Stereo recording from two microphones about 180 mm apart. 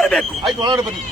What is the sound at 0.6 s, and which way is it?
Speech, 25° right (ahead or behind).